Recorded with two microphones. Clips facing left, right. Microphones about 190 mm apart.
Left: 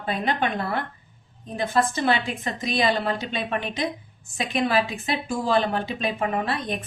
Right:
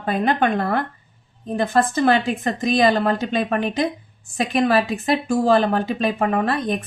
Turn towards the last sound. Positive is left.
turn(degrees=-45)  # may be behind; listen again after turning